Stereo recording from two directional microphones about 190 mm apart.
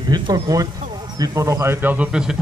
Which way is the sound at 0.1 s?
20° right (ahead or behind).